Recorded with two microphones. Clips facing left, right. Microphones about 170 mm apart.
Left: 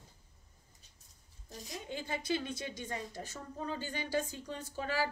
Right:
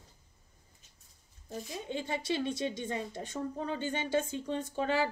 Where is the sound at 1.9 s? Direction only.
20° right (ahead or behind).